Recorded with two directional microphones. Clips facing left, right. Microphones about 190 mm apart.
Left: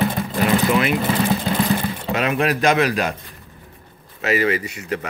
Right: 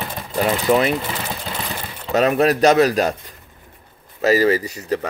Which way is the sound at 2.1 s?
40° right (ahead or behind).